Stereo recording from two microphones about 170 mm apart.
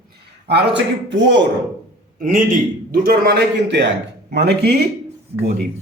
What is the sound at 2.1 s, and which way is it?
A man's voice, 50° right (ahead or behind).